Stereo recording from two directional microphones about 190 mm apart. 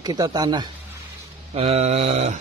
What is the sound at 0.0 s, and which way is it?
Speech, 20° right (ahead or behind).